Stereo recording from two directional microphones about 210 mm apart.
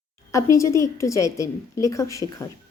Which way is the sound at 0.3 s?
15° left (ahead or behind).